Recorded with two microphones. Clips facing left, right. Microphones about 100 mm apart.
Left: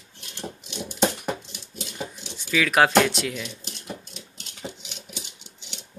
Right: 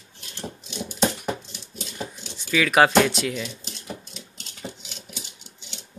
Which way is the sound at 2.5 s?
Centre (ahead or behind).